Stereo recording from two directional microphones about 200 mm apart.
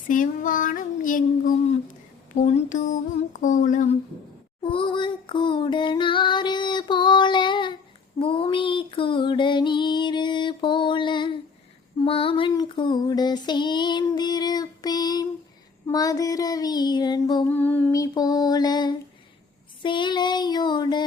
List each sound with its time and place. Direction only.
0.1 s a sound: 40° left (ahead or behind)
4.6 s female singing: 25° left (ahead or behind)
17.5 s female singing: 10° left (ahead or behind)